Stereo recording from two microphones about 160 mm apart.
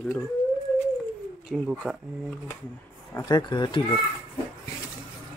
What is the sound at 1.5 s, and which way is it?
Speech, 5° right (ahead or behind).